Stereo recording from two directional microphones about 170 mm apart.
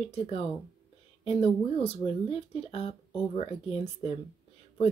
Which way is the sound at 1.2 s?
35° left (ahead or behind).